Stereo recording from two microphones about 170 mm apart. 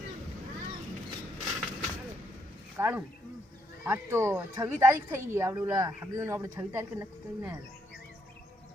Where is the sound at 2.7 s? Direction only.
10° right (ahead or behind).